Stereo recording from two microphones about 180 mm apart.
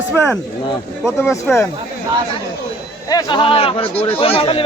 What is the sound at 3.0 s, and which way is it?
Speech, 20° left (ahead or behind).